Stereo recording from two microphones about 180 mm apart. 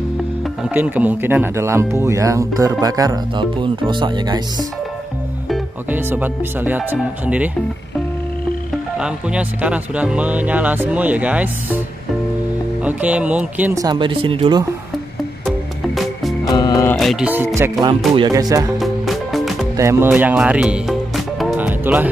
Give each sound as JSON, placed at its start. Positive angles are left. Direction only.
{"t": 0.7, "sound": "speech", "side_deg": -10}
{"t": 5.5, "sound": "speech", "side_deg": -10}
{"t": 8.9, "sound": "speech", "side_deg": -5}
{"t": 12.8, "sound": "speech", "side_deg": -10}
{"t": 13.7, "sound": "speech", "side_deg": -25}
{"t": 16.0, "sound": "music", "side_deg": 0}
{"t": 16.4, "sound": "music", "side_deg": 20}
{"t": 16.9, "sound": "music", "side_deg": 0}
{"t": 17.3, "sound": "speech", "side_deg": -10}
{"t": 18.1, "sound": "speech", "side_deg": -25}
{"t": 18.8, "sound": "music", "side_deg": 0}
{"t": 19.8, "sound": "speech", "side_deg": -15}
{"t": 21.4, "sound": "music", "side_deg": -5}